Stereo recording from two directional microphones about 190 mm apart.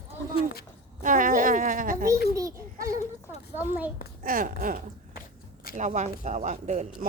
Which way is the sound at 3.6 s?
10° right (ahead or behind).